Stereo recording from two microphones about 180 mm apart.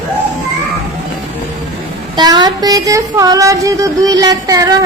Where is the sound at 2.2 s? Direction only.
25° right (ahead or behind).